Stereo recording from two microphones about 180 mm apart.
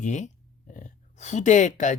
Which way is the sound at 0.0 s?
40° left (ahead or behind).